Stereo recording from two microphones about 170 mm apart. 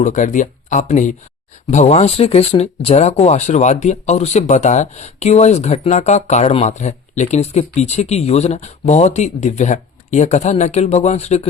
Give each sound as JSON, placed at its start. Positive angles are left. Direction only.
{"t": 0.0, "sound": "speech", "side_deg": 50}